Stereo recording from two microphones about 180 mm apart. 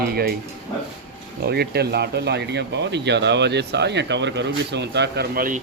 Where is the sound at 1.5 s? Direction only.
65° right (ahead or behind).